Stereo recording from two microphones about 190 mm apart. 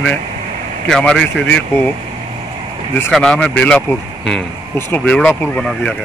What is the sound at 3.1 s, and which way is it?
Speech, centre (ahead or behind).